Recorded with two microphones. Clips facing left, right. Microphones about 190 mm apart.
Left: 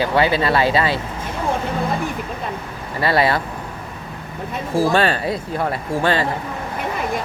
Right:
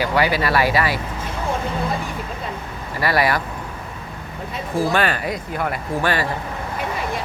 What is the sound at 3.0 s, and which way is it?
Speech, 25° left (ahead or behind).